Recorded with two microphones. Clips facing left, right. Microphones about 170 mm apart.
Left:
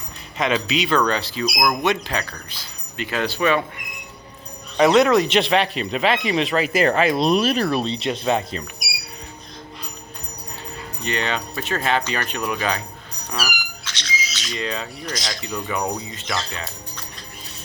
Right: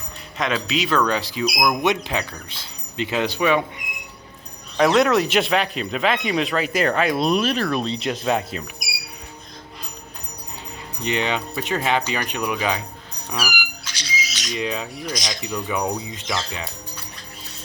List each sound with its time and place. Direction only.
0.3 s speech: centre (ahead or behind); by 3.6 s 15° right (ahead or behind)
4.8 s speech: centre (ahead or behind)
11.0 s speech: 15° right (ahead or behind)
15.4 s speech: 5° right (ahead or behind)